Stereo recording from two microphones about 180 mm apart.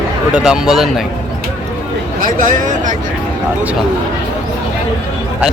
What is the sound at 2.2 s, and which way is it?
Speech, 45° right (ahead or behind).